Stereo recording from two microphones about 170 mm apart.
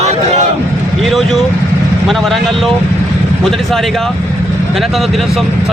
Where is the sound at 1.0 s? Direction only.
Centre (ahead or behind).